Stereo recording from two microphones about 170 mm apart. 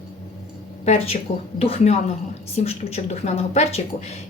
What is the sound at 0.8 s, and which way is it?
Speech, 40° left (ahead or behind).